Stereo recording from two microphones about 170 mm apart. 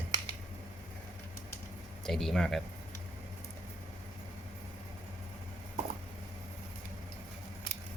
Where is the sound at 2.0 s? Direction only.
Centre (ahead or behind).